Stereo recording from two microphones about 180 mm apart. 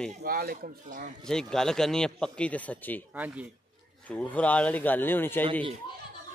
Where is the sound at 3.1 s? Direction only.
10° right (ahead or behind).